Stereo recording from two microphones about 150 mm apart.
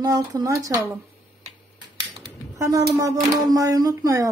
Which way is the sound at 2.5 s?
20° right (ahead or behind).